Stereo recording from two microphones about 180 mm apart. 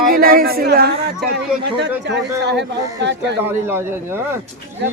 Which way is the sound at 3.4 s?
10° right (ahead or behind).